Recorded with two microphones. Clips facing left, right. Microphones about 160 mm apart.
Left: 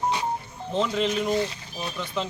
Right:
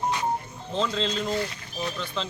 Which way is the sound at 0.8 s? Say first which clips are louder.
Left 3 dB; 20° left (ahead or behind).